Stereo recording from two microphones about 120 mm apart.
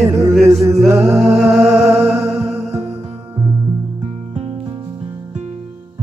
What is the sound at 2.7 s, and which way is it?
Music, 55° right (ahead or behind).